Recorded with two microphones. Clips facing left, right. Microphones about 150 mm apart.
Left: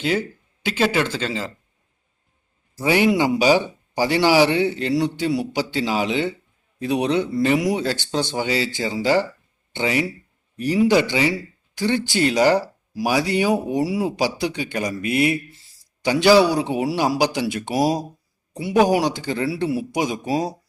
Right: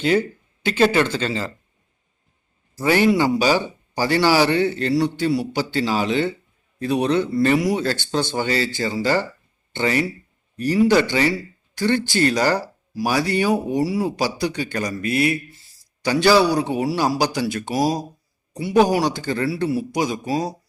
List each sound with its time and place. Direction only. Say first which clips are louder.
0.0 s speech: right 4 dB; 5° left (ahead or behind)
2.8 s a man's voice: right 1 dB; 15° left (ahead or behind)